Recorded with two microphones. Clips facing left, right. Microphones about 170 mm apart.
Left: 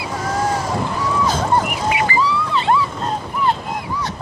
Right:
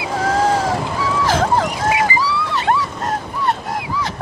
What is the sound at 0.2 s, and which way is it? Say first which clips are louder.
Boat: right 5 dB; 90° right.